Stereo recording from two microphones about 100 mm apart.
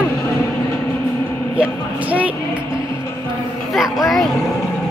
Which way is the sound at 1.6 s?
15° right (ahead or behind).